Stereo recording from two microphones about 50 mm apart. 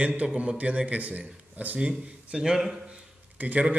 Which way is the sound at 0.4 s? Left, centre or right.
Right.